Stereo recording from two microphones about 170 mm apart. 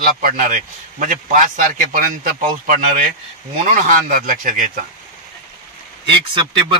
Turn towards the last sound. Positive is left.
turn(degrees=-30)  # may be behind; listen again after turning